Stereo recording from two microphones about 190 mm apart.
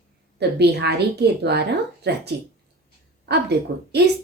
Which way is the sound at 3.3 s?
60° right (ahead or behind).